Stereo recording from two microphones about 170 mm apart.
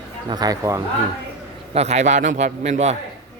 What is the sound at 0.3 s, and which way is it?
Speech, 25° right (ahead or behind).